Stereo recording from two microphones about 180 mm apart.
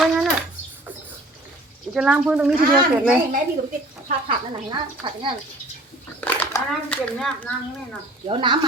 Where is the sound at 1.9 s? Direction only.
5° right (ahead or behind).